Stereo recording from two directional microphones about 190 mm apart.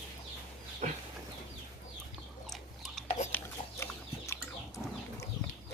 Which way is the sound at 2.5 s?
Centre (ahead or behind).